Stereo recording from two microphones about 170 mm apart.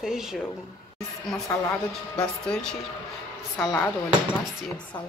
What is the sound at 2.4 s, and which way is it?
Speech, 5° left (ahead or behind).